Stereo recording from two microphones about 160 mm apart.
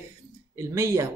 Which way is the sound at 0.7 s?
20° right (ahead or behind).